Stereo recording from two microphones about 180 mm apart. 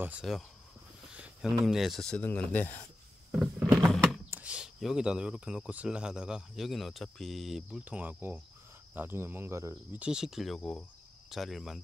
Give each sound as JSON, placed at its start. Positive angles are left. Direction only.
{"t": 0.0, "sound": "speech", "side_deg": -5}
{"t": 1.1, "sound": "a sound", "side_deg": -5}
{"t": 1.7, "sound": "speech", "side_deg": 0}
{"t": 3.3, "sound": "power windows", "side_deg": -5}
{"t": 4.3, "sound": "speech", "side_deg": -5}
{"t": 10.0, "sound": "speech", "side_deg": -5}